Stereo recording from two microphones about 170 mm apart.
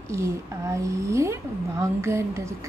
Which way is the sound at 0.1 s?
15° right (ahead or behind).